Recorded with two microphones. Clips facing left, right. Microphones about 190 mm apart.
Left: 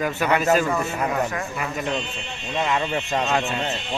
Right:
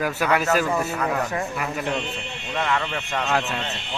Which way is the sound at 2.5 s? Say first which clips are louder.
Left 2 dB; 15° left (ahead or behind).